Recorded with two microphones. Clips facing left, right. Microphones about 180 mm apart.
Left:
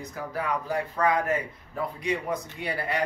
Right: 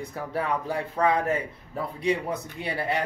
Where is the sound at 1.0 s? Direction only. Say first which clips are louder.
Right 2 dB; 30° right (ahead or behind).